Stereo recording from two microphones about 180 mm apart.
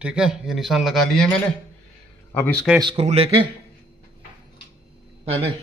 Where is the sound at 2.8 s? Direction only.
30° right (ahead or behind).